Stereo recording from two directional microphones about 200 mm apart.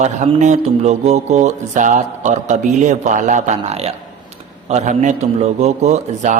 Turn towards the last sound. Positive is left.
turn(degrees=-35)  # may be behind; listen again after turning